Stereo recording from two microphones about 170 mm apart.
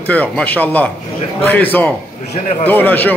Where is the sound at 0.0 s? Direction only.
10° left (ahead or behind).